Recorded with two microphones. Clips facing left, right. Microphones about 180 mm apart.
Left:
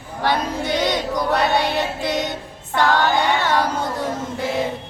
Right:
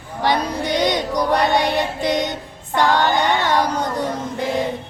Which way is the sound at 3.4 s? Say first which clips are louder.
Right 1 dB; 15° right (ahead or behind).